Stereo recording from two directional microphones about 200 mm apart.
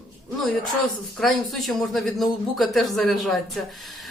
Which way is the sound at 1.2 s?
Centre (ahead or behind).